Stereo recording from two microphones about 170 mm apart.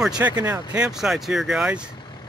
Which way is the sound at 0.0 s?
5° right (ahead or behind).